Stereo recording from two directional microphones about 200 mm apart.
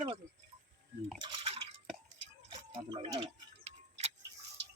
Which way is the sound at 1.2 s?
30° right (ahead or behind).